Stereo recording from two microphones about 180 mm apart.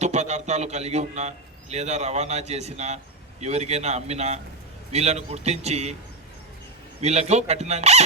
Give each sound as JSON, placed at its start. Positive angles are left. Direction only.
{"t": 0.0, "sound": "a man's voice", "side_deg": -40}
{"t": 7.0, "sound": "a man's voice", "side_deg": -35}